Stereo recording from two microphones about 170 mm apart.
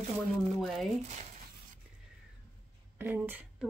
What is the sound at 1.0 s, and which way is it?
Speech, 45° right (ahead or behind).